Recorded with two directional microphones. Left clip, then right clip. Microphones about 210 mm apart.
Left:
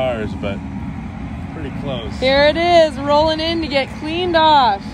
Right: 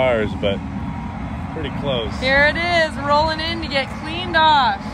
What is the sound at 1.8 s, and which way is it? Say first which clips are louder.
Speech: right 4 dB; 60° right (ahead or behind).